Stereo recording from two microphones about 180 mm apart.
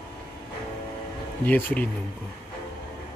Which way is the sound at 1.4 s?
10° left (ahead or behind).